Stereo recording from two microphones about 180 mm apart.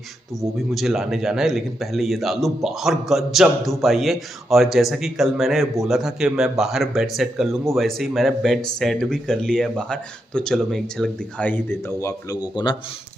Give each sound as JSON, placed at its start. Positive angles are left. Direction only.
{"t": 0.4, "sound": "speech", "side_deg": 0}